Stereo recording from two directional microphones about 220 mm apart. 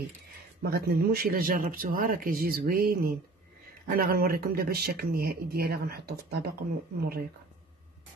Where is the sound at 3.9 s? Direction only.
45° right (ahead or behind).